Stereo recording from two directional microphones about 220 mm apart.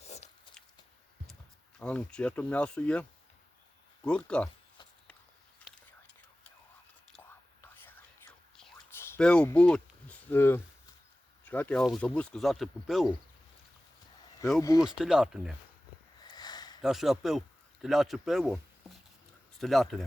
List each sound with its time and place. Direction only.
0.0 s a sound: 30° left (ahead or behind)
1.8 s speech: 5° left (ahead or behind)
5.7 s whispering: centre (ahead or behind)
7.6 s whispering: 10° left (ahead or behind)
11.4 s speech: 10° left (ahead or behind)
14.6 s speech: 15° left (ahead or behind)
14.8 s speech: centre (ahead or behind)
16.2 s a sound: 20° left (ahead or behind)
16.8 s speech: centre (ahead or behind)